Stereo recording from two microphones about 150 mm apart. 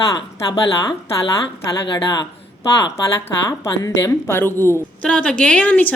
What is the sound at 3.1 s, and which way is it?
A woman's voice, 20° left (ahead or behind).